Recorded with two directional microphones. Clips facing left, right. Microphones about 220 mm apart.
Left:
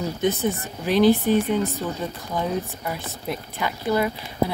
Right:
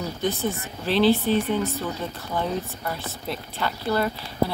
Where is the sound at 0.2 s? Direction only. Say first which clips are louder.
Left 3 dB; 20° left (ahead or behind).